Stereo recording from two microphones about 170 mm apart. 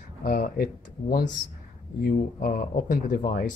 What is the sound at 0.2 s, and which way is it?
Speech, 60° left (ahead or behind).